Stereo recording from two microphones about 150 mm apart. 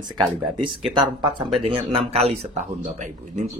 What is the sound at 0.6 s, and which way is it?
Speech, 30° right (ahead or behind).